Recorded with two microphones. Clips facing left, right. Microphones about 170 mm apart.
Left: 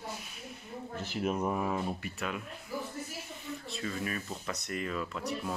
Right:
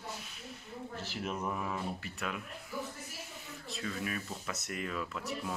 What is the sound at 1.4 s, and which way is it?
Speech, 35° left (ahead or behind).